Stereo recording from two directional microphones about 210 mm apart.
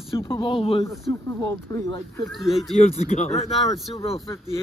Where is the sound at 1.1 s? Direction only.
15° left (ahead or behind).